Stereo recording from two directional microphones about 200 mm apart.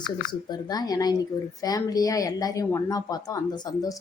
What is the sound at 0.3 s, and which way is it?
A woman's voice, 20° left (ahead or behind).